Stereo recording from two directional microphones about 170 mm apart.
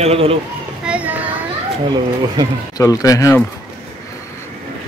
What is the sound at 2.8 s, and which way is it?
Speech, 20° left (ahead or behind).